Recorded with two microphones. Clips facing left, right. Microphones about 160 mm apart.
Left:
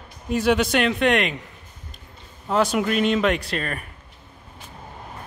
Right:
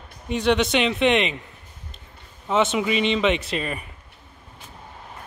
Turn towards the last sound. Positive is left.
turn(degrees=-5)  # may be behind; listen again after turning